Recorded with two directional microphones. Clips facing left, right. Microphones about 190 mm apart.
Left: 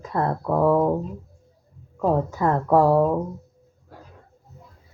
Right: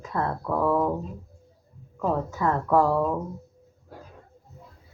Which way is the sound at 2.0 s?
35° left (ahead or behind).